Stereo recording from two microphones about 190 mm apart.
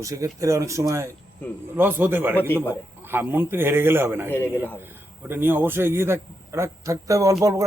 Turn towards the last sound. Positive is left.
turn(degrees=-15)  # may be behind; listen again after turning